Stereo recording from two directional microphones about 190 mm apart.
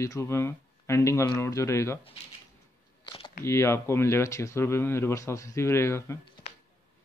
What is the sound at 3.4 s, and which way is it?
Speech, 15° left (ahead or behind).